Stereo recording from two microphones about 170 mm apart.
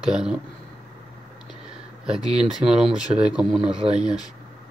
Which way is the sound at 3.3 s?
5° right (ahead or behind).